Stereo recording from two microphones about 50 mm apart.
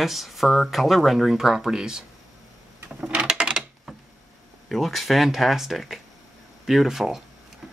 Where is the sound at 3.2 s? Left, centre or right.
Centre.